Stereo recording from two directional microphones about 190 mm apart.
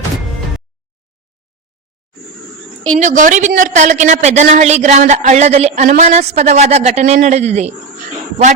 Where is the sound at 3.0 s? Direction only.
40° right (ahead or behind).